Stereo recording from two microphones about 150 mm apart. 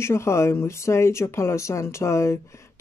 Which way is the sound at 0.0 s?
20° left (ahead or behind).